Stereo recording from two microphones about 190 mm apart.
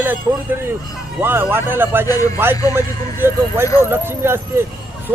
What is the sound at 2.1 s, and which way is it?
Speech, 20° left (ahead or behind).